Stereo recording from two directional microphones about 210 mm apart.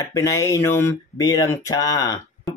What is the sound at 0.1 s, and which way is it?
Speech, 15° left (ahead or behind).